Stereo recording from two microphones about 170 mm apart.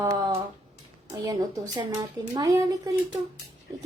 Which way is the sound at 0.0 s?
20° right (ahead or behind).